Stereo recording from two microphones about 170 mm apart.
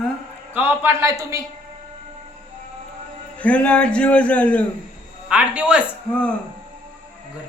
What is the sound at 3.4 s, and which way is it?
A man's voice, 5° left (ahead or behind).